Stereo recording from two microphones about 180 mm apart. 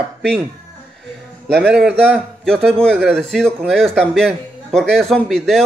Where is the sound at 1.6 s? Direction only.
5° right (ahead or behind).